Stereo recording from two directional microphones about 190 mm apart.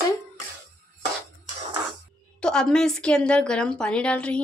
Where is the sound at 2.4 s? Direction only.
5° left (ahead or behind).